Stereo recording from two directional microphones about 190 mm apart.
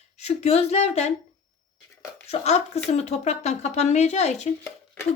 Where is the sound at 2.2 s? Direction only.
35° left (ahead or behind).